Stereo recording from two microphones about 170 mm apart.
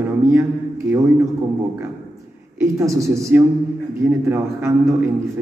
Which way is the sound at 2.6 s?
20° right (ahead or behind).